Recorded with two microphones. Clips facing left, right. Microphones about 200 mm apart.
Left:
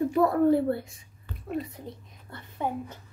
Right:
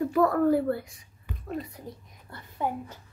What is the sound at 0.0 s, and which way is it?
A child's voice, 25° left (ahead or behind).